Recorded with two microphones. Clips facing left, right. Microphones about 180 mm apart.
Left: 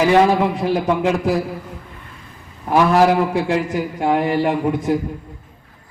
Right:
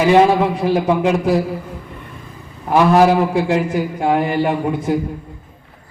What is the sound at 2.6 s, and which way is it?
A man's voice, 25° right (ahead or behind).